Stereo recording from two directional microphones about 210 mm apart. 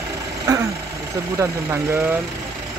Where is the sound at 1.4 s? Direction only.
15° right (ahead or behind).